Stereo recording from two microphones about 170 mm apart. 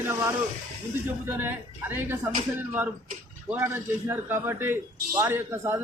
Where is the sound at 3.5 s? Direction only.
15° right (ahead or behind).